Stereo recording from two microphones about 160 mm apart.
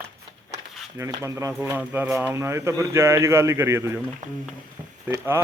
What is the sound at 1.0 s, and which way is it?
Speech, 20° right (ahead or behind).